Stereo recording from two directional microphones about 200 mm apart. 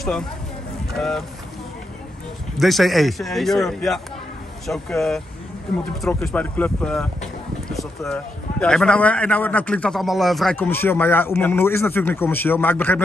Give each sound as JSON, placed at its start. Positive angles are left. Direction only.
{"t": 0.9, "sound": "a man's voice", "side_deg": 0}
{"t": 2.5, "sound": "a man's voice", "side_deg": 0}